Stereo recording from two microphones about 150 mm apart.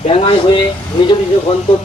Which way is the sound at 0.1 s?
35° left (ahead or behind).